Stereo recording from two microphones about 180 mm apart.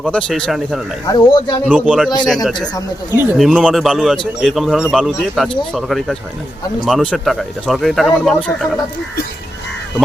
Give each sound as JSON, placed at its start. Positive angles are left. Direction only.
{"t": 0.0, "sound": "speech", "side_deg": 5}
{"t": 1.0, "sound": "speech", "side_deg": 25}
{"t": 1.6, "sound": "a man's voice", "side_deg": -5}